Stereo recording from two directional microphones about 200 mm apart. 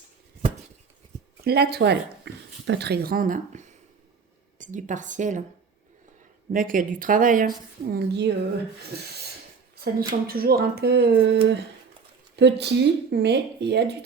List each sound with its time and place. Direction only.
1.5 s a woman's voice: 50° right (ahead or behind)
6.5 s a woman's voice: 45° right (ahead or behind)